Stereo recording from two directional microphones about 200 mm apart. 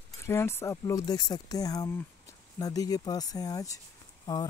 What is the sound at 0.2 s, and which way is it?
Speech, 15° left (ahead or behind).